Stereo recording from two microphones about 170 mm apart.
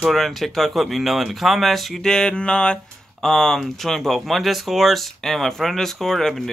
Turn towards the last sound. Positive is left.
turn(degrees=0)  # may be behind; listen again after turning